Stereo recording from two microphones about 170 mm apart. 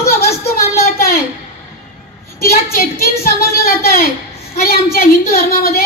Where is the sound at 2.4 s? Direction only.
60° left (ahead or behind).